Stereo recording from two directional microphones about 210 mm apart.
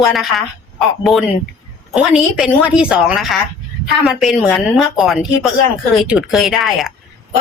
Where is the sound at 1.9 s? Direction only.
5° right (ahead or behind).